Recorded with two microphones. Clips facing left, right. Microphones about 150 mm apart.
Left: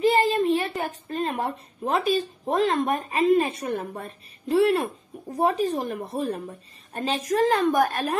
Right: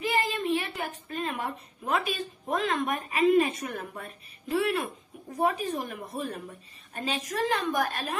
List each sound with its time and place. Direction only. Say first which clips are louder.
0.0 s a woman's voice: left 8 dB; 35° left (ahead or behind); by 8.2 s 50° left (ahead or behind)